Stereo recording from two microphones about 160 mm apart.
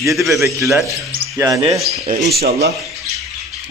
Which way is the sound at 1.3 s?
20° right (ahead or behind).